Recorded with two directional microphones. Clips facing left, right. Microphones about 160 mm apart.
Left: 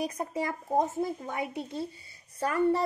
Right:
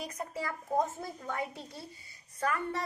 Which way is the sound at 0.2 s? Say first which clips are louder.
Left 5 dB; 25° left (ahead or behind).